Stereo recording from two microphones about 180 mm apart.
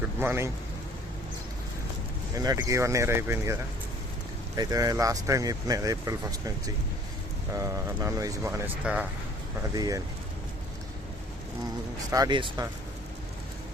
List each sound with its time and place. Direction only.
0.0 s a sound: 10° right (ahead or behind)
2.3 s speech: 20° right (ahead or behind)
7.5 s speech: 15° right (ahead or behind)
9.7 s speech: 20° right (ahead or behind)
12.1 s speech: 25° right (ahead or behind)